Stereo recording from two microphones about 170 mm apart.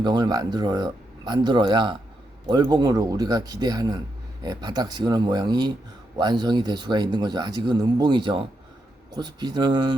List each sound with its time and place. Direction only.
0.0 s speech: 25° right (ahead or behind)